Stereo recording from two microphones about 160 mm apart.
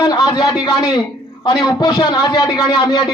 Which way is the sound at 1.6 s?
25° left (ahead or behind).